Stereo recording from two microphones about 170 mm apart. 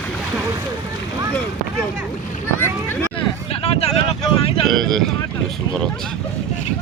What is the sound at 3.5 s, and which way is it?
Vehicle, 35° left (ahead or behind).